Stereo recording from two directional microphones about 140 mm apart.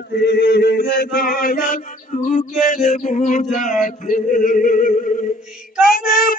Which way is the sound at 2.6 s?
65° left (ahead or behind).